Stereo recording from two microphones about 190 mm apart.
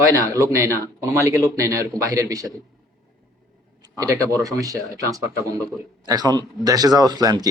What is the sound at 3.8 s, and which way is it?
Speech, 20° right (ahead or behind).